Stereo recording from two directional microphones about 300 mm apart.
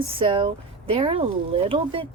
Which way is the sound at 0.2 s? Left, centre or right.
Centre.